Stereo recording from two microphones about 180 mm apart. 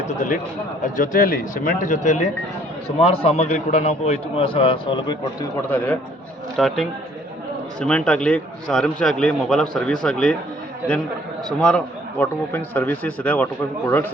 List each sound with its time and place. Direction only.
0.8 s a man's voice: 45° left (ahead or behind); by 5.1 s 25° left (ahead or behind)
5.7 s a man's voice: 10° left (ahead or behind)
11.4 s a man's voice: 5° left (ahead or behind)